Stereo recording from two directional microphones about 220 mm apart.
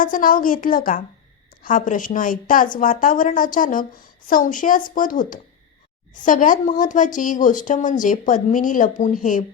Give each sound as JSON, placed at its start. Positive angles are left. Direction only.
{"t": 0.0, "sound": "speech", "side_deg": 40}